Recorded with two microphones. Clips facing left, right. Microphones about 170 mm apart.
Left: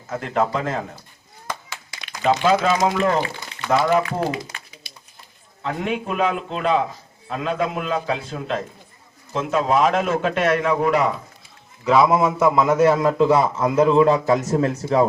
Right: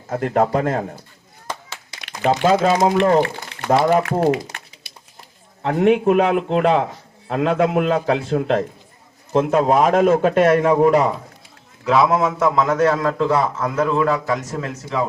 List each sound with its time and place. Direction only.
0.2 s a man's voice: 50° right (ahead or behind)
2.2 s speech: 35° right (ahead or behind)
3.8 s a man's voice: 50° right (ahead or behind); by 4.6 s 65° right (ahead or behind)
5.6 s a man's voice: 60° right (ahead or behind); by 11.1 s 40° right (ahead or behind)
11.9 s a man's voice: centre (ahead or behind); by 15.0 s 35° left (ahead or behind)